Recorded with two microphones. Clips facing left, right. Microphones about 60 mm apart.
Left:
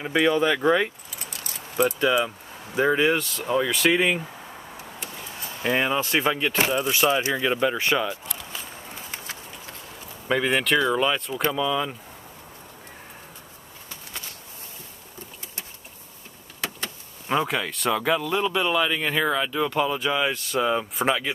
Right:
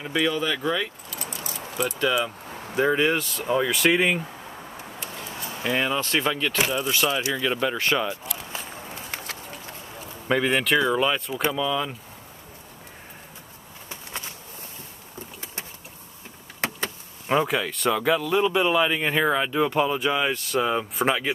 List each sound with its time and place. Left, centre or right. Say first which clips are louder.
0.0 s speech: left 4 dB; centre
2.0 s speech: left 2 dB; centre
5.6 s speech: left 2 dB; centre
10.2 s speech: even; centre
17.3 s speech: right 2 dB; centre